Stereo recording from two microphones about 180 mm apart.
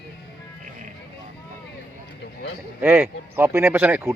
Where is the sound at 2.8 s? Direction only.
10° right (ahead or behind).